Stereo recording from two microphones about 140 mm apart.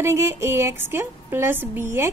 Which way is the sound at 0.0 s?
20° right (ahead or behind).